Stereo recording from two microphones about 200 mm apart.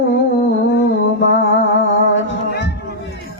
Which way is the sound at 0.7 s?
60° left (ahead or behind).